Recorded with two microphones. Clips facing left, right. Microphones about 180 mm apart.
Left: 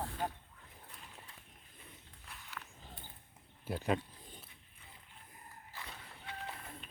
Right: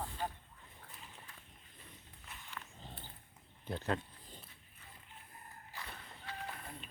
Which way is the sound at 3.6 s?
10° left (ahead or behind).